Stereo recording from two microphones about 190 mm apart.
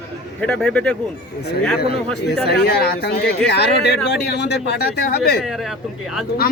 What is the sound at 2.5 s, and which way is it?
Speech, 55° left (ahead or behind).